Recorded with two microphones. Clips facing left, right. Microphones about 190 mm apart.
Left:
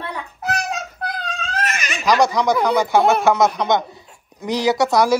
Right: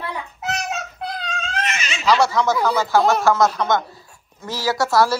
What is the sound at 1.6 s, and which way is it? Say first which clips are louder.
Baby laughter: left 2 dB; 5° left (ahead or behind).